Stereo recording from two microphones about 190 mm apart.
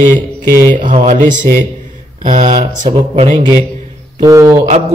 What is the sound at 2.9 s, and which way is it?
Speech, 25° right (ahead or behind).